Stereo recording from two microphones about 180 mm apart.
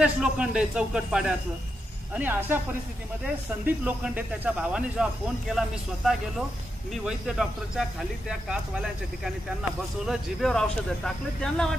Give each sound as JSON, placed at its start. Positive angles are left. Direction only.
{"t": 0.0, "sound": "speech", "side_deg": -5}
{"t": 3.6, "sound": "speech", "side_deg": -10}